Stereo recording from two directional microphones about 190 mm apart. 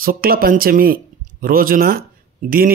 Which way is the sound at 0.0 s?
50° right (ahead or behind).